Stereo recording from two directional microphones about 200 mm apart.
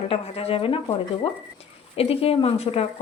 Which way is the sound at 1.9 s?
30° left (ahead or behind).